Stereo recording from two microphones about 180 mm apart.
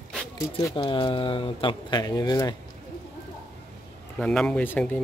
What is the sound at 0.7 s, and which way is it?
Speech, 30° left (ahead or behind).